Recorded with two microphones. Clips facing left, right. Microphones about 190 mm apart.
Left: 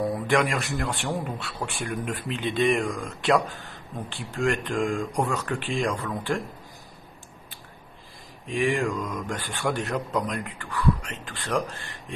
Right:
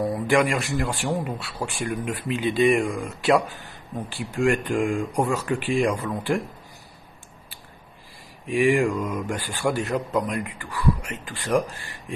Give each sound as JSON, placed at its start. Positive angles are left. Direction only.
{"t": 0.0, "sound": "speech", "side_deg": 0}
{"t": 5.8, "sound": "speech", "side_deg": -15}
{"t": 8.7, "sound": "speech", "side_deg": -15}
{"t": 9.3, "sound": "speech", "side_deg": 0}
{"t": 11.4, "sound": "speech", "side_deg": -15}